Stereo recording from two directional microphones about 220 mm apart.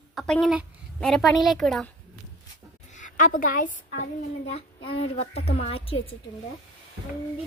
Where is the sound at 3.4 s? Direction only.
40° left (ahead or behind).